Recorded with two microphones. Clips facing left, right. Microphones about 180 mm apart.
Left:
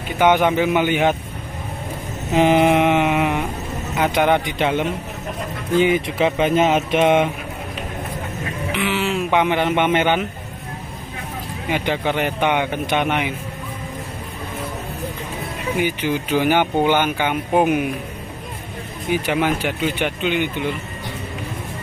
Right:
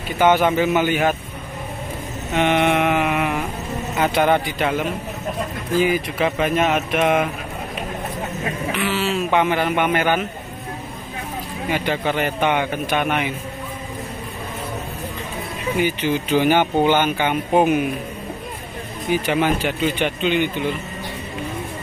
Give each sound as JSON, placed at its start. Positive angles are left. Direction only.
{"t": 0.2, "sound": "speech", "side_deg": 15}
{"t": 2.3, "sound": "mantra", "side_deg": 30}
{"t": 4.0, "sound": "speech", "side_deg": 15}
{"t": 8.7, "sound": "speech", "side_deg": 15}
{"t": 11.7, "sound": "speech", "side_deg": 15}
{"t": 15.8, "sound": "speech", "side_deg": 10}
{"t": 19.2, "sound": "speech", "side_deg": 10}